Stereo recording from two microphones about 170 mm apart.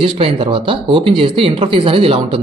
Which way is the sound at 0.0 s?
30° right (ahead or behind).